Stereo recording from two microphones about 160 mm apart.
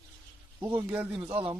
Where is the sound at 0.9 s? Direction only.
10° right (ahead or behind).